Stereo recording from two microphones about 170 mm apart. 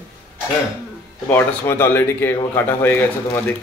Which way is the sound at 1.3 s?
15° left (ahead or behind).